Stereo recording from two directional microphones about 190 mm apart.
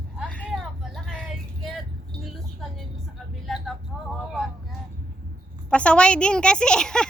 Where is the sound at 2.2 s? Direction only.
Centre (ahead or behind).